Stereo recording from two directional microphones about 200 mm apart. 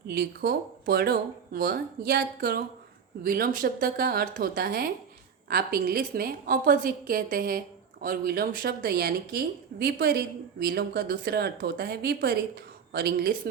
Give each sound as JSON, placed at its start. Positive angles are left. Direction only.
{"t": 0.1, "sound": "speech", "side_deg": -50}